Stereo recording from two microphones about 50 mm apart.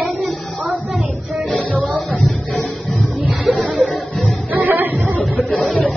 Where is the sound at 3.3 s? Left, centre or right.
Centre.